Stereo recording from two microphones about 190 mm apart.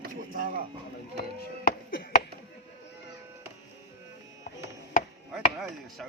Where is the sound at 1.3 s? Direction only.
55° left (ahead or behind).